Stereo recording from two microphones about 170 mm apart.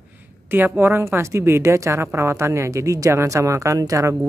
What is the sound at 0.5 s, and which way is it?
Speech, 10° right (ahead or behind).